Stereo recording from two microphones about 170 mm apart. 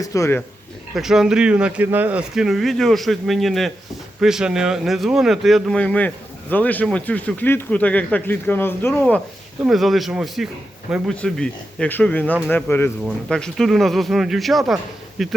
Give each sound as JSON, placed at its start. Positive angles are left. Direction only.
{"t": 0.0, "sound": "speech", "side_deg": 20}
{"t": 0.9, "sound": "speech", "side_deg": -5}